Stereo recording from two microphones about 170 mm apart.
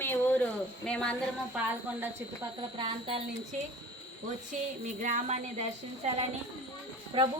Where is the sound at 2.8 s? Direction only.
30° right (ahead or behind).